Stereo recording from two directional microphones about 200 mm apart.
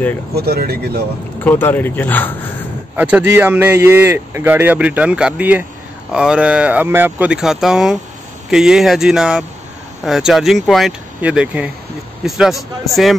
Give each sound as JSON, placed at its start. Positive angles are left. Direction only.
{"t": 0.3, "sound": "speech", "side_deg": -50}
{"t": 1.4, "sound": "speech", "side_deg": 10}
{"t": 3.0, "sound": "speech", "side_deg": -10}